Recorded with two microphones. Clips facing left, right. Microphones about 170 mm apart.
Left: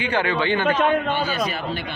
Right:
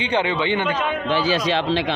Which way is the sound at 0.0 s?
20° right (ahead or behind).